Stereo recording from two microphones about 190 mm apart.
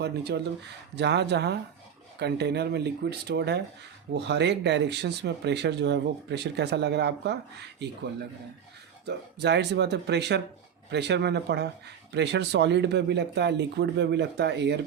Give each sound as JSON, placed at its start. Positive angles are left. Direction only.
{"t": 0.0, "sound": "speech", "side_deg": -60}
{"t": 9.0, "sound": "speech", "side_deg": -60}